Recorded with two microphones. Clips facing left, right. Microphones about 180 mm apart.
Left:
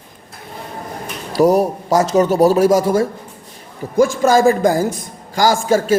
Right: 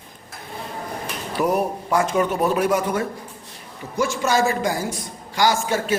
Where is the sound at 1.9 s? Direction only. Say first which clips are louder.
Left 6 dB; 40° left (ahead or behind).